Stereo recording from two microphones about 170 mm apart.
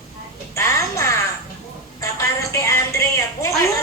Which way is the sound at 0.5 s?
15° left (ahead or behind).